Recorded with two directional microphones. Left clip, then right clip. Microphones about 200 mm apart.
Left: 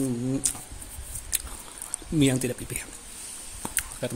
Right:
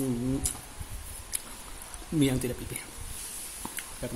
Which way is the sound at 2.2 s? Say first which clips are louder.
Left 4 dB; 35° left (ahead or behind).